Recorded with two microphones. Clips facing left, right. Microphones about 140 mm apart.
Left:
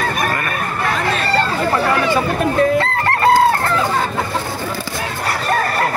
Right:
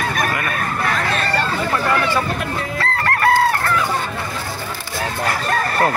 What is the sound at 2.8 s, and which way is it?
Chicken, 25° left (ahead or behind).